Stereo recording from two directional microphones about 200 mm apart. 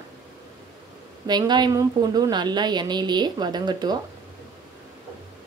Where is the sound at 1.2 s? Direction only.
20° right (ahead or behind).